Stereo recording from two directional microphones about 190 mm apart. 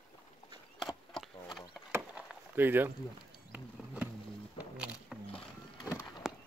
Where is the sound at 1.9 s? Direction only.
10° right (ahead or behind).